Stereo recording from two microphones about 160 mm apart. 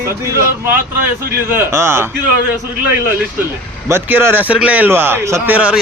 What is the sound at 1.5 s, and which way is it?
Speech, 15° right (ahead or behind).